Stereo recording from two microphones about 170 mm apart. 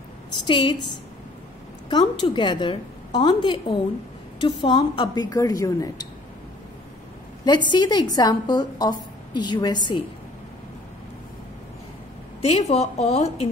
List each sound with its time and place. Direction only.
0.5 s a woman's voice: 30° left (ahead or behind)
1.9 s a woman's voice: 25° left (ahead or behind)
7.4 s a woman's voice: 25° left (ahead or behind)
12.4 s a woman's voice: 35° left (ahead or behind)